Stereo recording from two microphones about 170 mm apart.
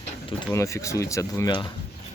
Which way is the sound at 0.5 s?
15° left (ahead or behind).